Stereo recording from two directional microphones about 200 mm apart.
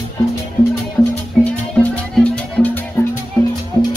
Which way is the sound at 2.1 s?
5° left (ahead or behind).